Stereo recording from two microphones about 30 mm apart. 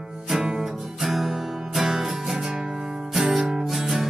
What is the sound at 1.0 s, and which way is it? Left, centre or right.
Music, centre.